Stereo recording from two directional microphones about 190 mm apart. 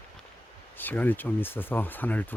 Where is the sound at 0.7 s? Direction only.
10° left (ahead or behind).